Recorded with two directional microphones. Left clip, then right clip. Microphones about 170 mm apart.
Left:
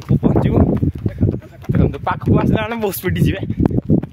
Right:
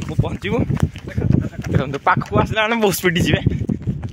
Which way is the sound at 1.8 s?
35° right (ahead or behind).